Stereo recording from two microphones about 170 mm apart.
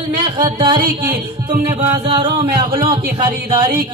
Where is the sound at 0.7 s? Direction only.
60° right (ahead or behind).